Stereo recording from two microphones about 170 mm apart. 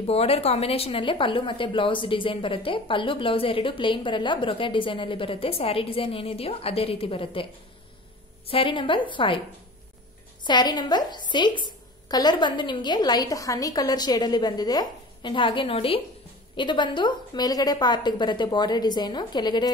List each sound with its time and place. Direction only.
0.0 s a woman's voice: 35° left (ahead or behind)
8.5 s a woman's voice: 30° left (ahead or behind)
10.4 s a woman's voice: 25° left (ahead or behind)